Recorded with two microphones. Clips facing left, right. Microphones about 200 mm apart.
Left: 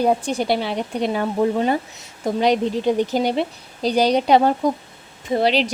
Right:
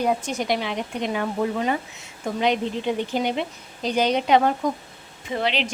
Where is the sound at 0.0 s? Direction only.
30° left (ahead or behind).